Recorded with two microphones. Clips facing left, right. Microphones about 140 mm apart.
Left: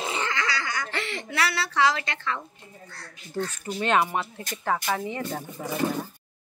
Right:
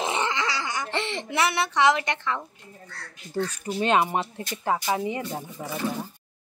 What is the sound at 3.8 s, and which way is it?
Speech, 20° right (ahead or behind).